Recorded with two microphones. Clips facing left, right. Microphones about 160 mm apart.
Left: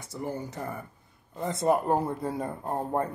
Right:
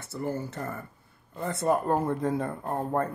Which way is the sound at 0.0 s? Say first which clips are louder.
Right 2 dB; 15° left (ahead or behind).